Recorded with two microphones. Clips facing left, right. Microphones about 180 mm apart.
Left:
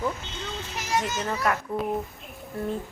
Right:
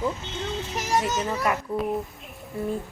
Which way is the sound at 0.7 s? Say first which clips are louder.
Right 2 dB; 45° right (ahead or behind).